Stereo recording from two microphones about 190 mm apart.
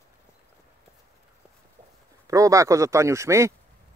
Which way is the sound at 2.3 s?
15° right (ahead or behind).